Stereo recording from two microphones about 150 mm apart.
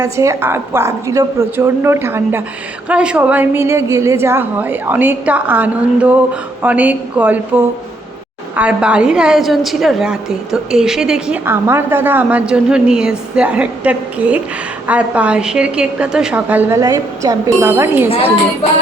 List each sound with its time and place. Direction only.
0.0 s a woman's voice: 20° right (ahead or behind); by 11.3 s 5° right (ahead or behind)
11.4 s a woman's voice: 15° right (ahead or behind)